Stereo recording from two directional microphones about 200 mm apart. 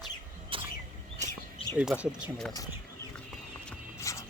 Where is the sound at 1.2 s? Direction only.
35° right (ahead or behind).